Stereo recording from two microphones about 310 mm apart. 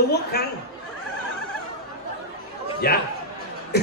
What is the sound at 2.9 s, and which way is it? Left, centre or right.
Speech, left.